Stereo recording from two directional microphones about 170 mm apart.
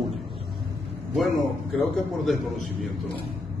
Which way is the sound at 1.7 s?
Centre (ahead or behind).